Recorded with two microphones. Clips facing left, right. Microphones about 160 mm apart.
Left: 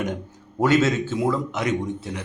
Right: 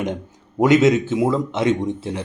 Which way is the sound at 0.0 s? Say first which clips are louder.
Right 2 dB; 20° right (ahead or behind).